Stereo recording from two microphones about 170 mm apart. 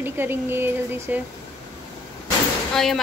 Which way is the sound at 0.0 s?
10° right (ahead or behind).